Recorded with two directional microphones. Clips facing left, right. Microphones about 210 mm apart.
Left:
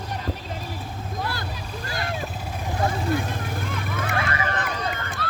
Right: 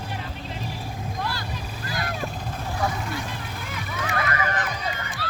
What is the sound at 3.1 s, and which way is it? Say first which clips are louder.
Vehicle: left 6 dB; 50° left (ahead or behind).